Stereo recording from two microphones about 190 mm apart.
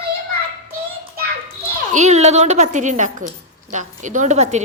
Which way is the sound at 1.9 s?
40° right (ahead or behind).